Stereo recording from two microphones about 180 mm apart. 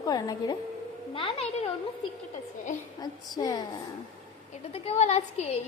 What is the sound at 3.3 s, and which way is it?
Speech, 20° left (ahead or behind).